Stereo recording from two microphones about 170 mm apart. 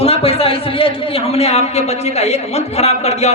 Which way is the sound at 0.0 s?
35° left (ahead or behind).